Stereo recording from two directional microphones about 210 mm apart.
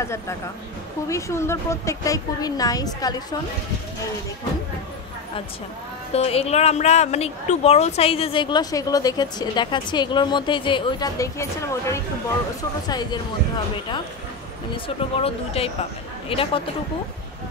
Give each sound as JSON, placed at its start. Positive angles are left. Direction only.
{"t": 0.0, "sound": "a woman's voice", "side_deg": 15}
{"t": 6.1, "sound": "speech", "side_deg": 30}
{"t": 15.2, "sound": "speech", "side_deg": 25}